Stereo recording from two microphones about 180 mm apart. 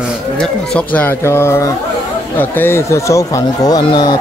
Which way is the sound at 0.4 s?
5° left (ahead or behind).